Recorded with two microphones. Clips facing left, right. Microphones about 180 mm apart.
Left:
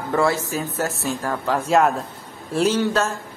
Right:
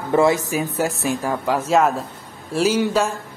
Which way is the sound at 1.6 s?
Centre (ahead or behind).